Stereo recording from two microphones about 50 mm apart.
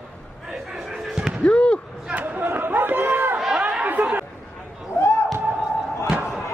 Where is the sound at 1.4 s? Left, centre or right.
Left.